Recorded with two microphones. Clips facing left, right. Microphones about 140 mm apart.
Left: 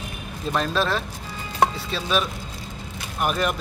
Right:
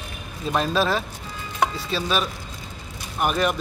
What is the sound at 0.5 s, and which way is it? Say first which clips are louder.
Speech: right 2 dB; 5° right (ahead or behind).